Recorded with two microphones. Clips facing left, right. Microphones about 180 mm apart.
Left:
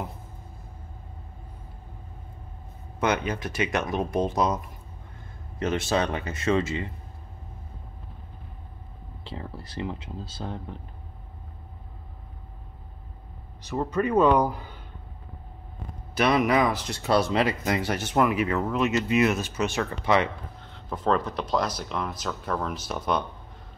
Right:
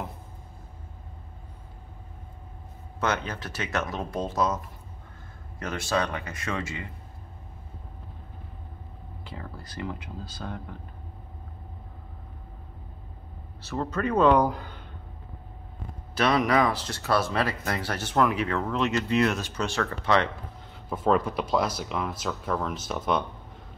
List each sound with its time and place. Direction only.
3.0 s speech: 15° left (ahead or behind)
5.6 s speech: 20° left (ahead or behind)
9.2 s speech: 25° left (ahead or behind)
13.6 s speech: 15° left (ahead or behind)
16.2 s speech: 10° left (ahead or behind)
20.7 s speech: 5° right (ahead or behind)